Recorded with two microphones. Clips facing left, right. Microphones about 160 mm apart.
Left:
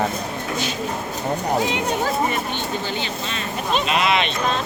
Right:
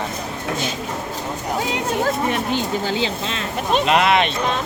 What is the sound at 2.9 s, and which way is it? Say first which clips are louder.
Speech: right 4 dB; 90° right.